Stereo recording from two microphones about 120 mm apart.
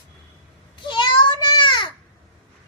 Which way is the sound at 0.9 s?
40° left (ahead or behind).